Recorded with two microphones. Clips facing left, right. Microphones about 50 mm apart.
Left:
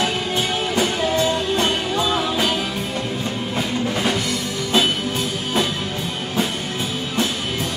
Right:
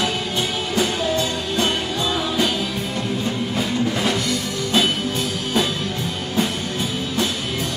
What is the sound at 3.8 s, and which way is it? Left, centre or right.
Music, centre.